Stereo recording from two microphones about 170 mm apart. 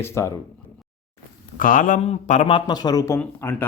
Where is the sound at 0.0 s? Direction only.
15° left (ahead or behind).